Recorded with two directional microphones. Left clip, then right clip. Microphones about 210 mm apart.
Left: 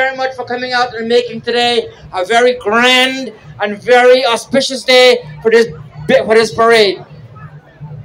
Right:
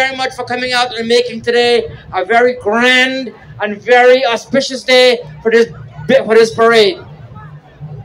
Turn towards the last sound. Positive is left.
turn(degrees=30)  # may be behind; listen again after turning